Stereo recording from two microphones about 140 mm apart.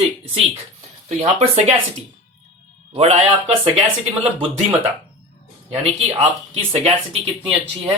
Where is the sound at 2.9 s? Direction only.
50° right (ahead or behind).